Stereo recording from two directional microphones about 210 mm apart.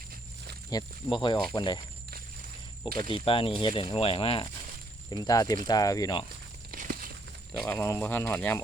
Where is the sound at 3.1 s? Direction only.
25° left (ahead or behind).